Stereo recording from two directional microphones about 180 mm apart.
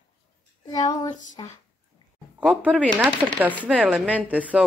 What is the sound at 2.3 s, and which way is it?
Speech, 10° right (ahead or behind).